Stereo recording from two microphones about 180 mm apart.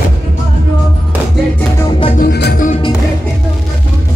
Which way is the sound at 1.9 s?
30° left (ahead or behind).